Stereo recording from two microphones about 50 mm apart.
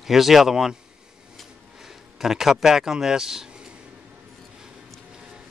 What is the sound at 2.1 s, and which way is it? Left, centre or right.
Speech, centre.